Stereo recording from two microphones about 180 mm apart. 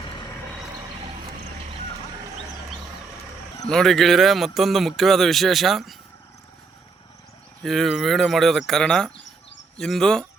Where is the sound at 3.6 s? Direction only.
Centre (ahead or behind).